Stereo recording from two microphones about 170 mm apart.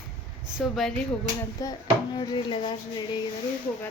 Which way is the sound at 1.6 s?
20° left (ahead or behind).